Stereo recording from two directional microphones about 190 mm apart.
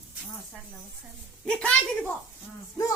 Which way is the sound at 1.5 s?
5° left (ahead or behind).